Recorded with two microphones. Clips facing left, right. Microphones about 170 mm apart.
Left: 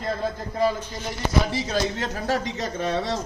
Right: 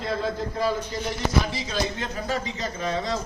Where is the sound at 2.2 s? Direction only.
70° left (ahead or behind).